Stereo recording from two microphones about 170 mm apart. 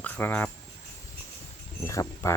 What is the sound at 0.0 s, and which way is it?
Speech, 10° left (ahead or behind).